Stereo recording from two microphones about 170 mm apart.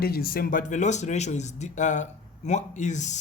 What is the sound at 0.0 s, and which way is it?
Speech, 60° left (ahead or behind).